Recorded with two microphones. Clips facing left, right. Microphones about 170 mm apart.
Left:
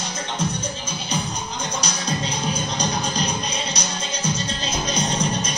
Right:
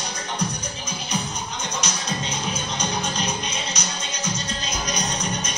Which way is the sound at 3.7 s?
30° left (ahead or behind).